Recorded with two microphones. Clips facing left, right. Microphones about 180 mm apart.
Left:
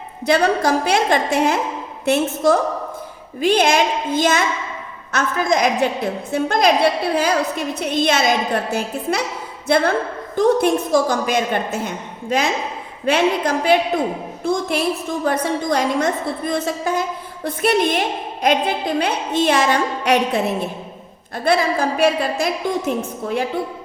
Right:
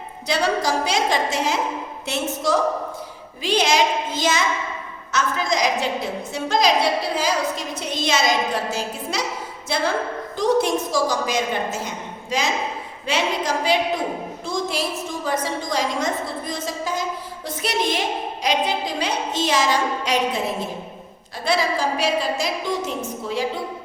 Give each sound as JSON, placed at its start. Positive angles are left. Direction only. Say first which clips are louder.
{"t": 0.3, "sound": "a woman's voice", "louder": "left 5 dB", "side_deg": 55}